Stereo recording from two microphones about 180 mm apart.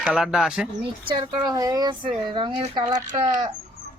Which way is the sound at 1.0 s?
25° right (ahead or behind).